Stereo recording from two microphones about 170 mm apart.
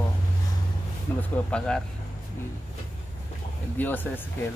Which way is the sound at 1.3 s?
5° left (ahead or behind).